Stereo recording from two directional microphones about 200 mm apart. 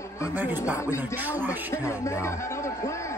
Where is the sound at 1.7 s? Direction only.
15° left (ahead or behind).